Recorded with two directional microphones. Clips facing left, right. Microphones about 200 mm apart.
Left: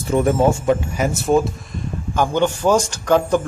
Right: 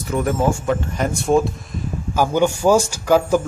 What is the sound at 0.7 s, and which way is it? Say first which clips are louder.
Speech: left 1 dB; 5° left (ahead or behind).